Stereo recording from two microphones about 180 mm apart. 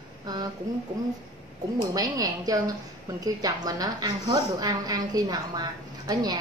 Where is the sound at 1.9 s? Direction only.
20° right (ahead or behind).